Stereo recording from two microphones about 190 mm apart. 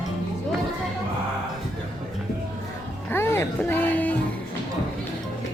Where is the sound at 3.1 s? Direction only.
10° left (ahead or behind).